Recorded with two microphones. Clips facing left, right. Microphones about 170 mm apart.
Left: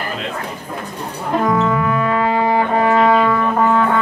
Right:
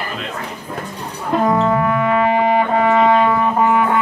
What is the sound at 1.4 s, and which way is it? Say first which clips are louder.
Brass instrument: right 2 dB; 30° right (ahead or behind).